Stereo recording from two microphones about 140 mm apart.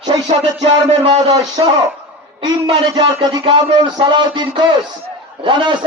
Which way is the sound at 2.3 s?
35° right (ahead or behind).